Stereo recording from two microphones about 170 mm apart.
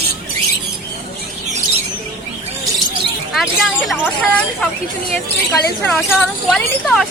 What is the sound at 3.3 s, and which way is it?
Speech, centre (ahead or behind).